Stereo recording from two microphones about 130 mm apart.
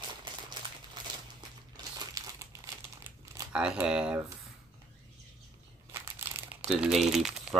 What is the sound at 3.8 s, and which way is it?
Speech, 5° right (ahead or behind).